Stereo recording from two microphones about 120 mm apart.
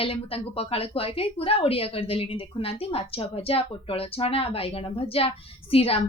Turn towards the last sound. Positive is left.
turn(degrees=55)  # may be behind; listen again after turning